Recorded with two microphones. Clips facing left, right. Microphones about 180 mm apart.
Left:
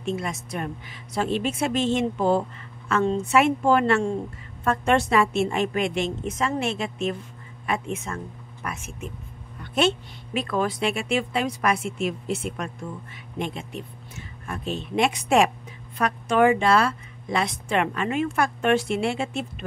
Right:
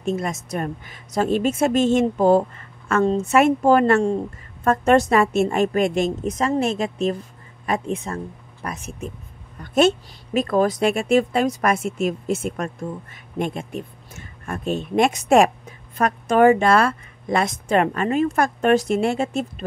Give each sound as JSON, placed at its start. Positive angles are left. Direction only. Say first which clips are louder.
{"t": 0.0, "sound": "a woman's voice", "louder": "right 4 dB", "side_deg": -45}